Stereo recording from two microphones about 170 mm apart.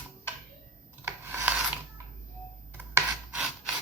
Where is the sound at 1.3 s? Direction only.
10° right (ahead or behind).